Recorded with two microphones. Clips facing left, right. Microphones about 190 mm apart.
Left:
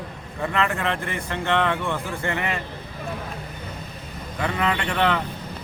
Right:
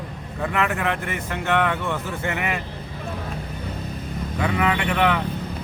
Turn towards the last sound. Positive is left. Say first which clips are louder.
# right 2 dB
turn(degrees=-5)  # may be behind; listen again after turning